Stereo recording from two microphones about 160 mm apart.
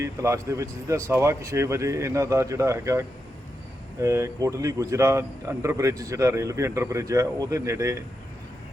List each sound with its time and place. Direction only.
0.0 s speech: 20° right (ahead or behind)